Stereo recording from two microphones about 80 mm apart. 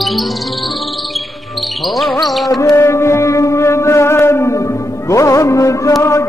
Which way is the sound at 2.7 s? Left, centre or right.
Left.